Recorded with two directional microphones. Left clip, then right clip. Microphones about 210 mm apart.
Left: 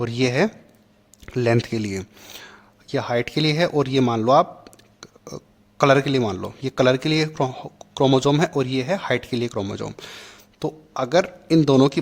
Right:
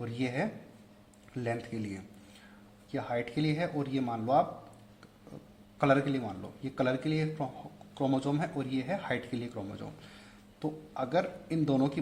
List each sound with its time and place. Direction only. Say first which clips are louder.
0.0 s speech: left 14 dB; 45° left (ahead or behind)
5.7 s a man's voice: left 11 dB; 40° left (ahead or behind)